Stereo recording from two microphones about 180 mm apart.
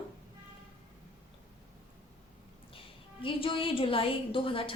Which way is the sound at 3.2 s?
30° left (ahead or behind).